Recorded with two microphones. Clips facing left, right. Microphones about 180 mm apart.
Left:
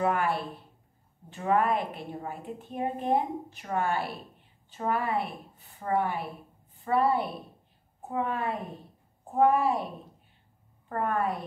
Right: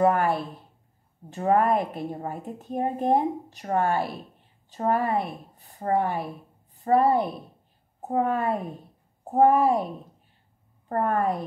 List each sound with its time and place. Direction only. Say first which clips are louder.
0.0 s a woman's voice: right 6 dB; 45° right (ahead or behind)
1.3 s a woman's voice: right 4 dB; 40° right (ahead or behind)
10.9 s a woman's voice: right 4 dB; 40° right (ahead or behind)